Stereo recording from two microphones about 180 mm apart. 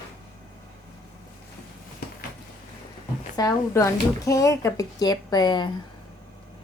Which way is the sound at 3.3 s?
20° left (ahead or behind).